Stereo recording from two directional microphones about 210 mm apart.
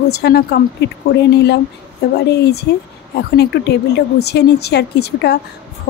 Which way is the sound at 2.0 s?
50° left (ahead or behind).